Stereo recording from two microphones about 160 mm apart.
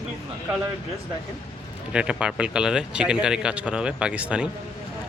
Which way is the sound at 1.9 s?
5° right (ahead or behind).